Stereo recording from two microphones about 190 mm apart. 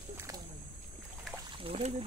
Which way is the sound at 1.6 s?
35° right (ahead or behind).